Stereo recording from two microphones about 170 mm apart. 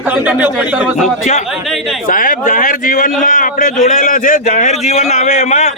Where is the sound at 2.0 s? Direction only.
50° left (ahead or behind).